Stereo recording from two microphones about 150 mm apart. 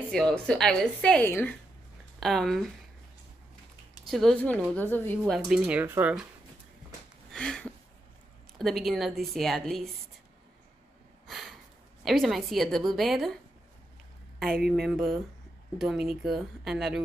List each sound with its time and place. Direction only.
0.1 s a woman's voice: 5° left (ahead or behind)
4.1 s a woman's voice: centre (ahead or behind)
5.5 s speech: 10° right (ahead or behind)
7.3 s a sound: 5° left (ahead or behind)
8.5 s a woman's voice: centre (ahead or behind)
11.2 s a sound: centre (ahead or behind)
12.0 s a woman's voice: centre (ahead or behind)
14.7 s a woman's voice: centre (ahead or behind)